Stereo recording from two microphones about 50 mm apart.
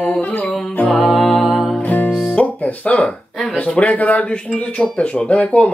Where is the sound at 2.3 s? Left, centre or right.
Left.